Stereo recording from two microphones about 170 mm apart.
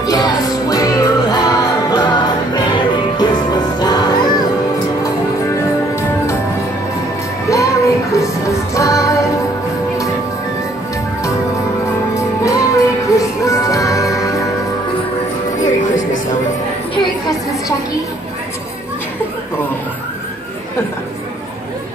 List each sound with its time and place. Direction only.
0.0 s music: 20° left (ahead or behind)
7.4 s music: 20° left (ahead or behind)
12.1 s music: 20° left (ahead or behind)
15.6 s music: 50° left (ahead or behind)